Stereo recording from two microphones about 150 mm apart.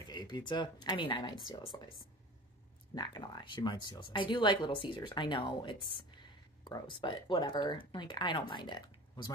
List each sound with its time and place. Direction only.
0.1 s speech: 30° left (ahead or behind)
2.9 s speech: 30° left (ahead or behind)